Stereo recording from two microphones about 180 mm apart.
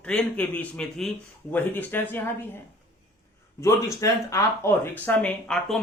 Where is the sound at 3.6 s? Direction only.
15° left (ahead or behind).